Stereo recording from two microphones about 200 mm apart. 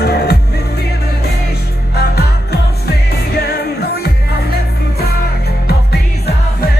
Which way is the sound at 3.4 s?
50° left (ahead or behind).